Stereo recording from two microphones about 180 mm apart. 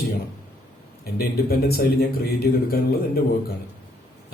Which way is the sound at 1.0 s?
60° left (ahead or behind).